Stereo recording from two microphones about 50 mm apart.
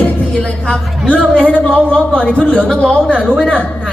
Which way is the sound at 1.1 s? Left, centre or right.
Left.